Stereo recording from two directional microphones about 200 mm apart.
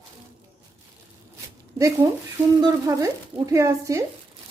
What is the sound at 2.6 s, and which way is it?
Speech, 20° right (ahead or behind).